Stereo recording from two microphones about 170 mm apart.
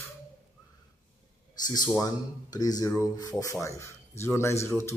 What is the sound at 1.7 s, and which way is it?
Speech, 20° left (ahead or behind).